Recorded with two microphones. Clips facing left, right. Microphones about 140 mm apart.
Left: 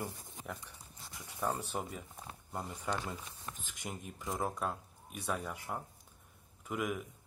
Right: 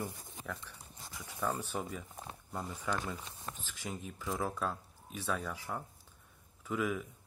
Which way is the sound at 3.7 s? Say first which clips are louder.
Right 2 dB; 10° left (ahead or behind).